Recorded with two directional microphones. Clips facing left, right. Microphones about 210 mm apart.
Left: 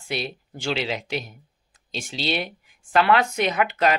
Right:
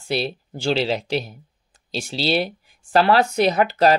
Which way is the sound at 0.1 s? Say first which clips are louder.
Right 5 dB; 30° right (ahead or behind).